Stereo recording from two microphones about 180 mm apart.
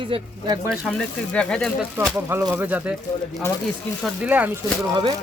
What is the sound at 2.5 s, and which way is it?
Speech, 10° right (ahead or behind).